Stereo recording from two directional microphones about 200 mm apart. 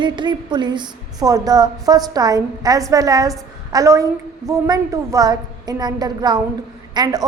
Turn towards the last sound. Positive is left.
turn(degrees=-20)  # may be behind; listen again after turning